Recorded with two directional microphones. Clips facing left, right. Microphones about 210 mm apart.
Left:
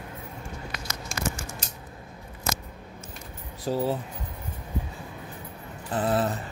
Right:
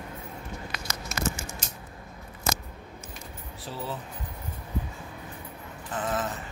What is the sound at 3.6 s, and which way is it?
Speech, 40° left (ahead or behind).